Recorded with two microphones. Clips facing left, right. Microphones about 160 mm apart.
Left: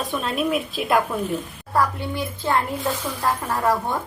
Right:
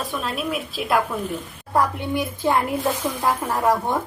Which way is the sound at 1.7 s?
15° right (ahead or behind).